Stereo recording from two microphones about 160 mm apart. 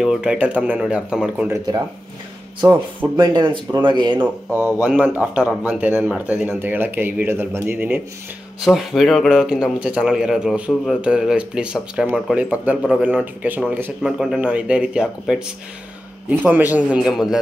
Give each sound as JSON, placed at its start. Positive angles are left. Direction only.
{"t": 0.0, "sound": "a man's voice", "side_deg": -5}
{"t": 3.2, "sound": "speech", "side_deg": -30}
{"t": 4.5, "sound": "a man's voice", "side_deg": -10}